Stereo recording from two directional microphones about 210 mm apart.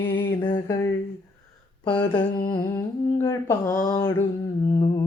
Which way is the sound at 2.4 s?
15° left (ahead or behind).